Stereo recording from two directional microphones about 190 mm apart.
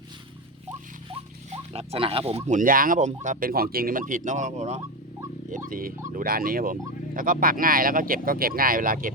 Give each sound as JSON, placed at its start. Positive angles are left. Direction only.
{"t": 1.1, "sound": "rodents", "side_deg": -35}
{"t": 2.5, "sound": "speech", "side_deg": -45}